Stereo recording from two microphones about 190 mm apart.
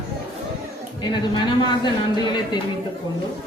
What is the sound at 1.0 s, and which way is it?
Speech, 25° left (ahead or behind).